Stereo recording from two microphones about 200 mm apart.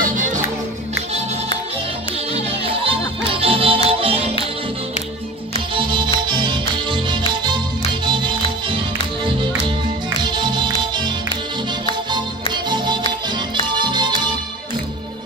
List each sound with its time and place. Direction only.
0.0 s music: 40° right (ahead or behind)
2.3 s music: 30° right (ahead or behind)
5.8 s music: 25° right (ahead or behind)
12.1 s music: 20° right (ahead or behind)